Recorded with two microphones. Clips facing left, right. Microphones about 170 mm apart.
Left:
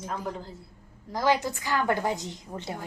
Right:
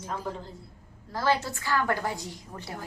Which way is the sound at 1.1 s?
15° left (ahead or behind).